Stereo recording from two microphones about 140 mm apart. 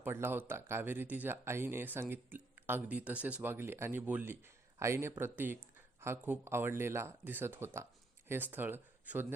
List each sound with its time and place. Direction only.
0.0 s speech: 15° right (ahead or behind)